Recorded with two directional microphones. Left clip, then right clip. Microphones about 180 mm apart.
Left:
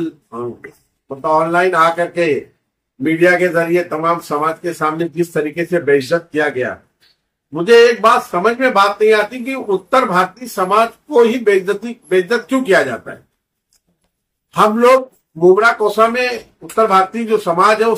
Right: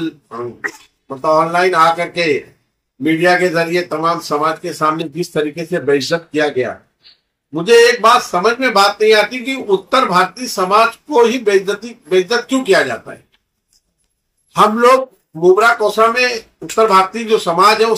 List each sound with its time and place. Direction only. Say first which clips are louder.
1.0 s speech: right 1 dB; 5° left (ahead or behind)
14.5 s speech: even; 5° left (ahead or behind)